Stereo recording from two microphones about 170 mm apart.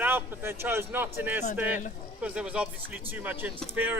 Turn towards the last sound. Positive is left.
turn(degrees=-10)  # may be behind; listen again after turning